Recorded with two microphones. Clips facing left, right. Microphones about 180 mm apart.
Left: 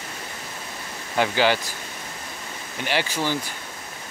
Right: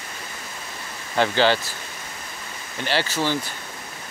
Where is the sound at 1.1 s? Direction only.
10° left (ahead or behind).